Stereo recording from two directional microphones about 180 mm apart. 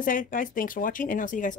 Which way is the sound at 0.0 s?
50° left (ahead or behind).